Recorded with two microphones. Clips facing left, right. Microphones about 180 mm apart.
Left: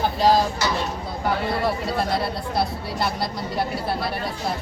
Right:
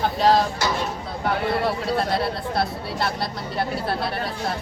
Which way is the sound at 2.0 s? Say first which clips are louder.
Right 1 dB; centre (ahead or behind).